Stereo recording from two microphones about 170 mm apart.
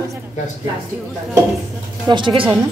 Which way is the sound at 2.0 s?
30° right (ahead or behind).